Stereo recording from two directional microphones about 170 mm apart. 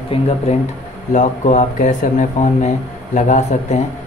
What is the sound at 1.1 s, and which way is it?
Speech, 50° left (ahead or behind).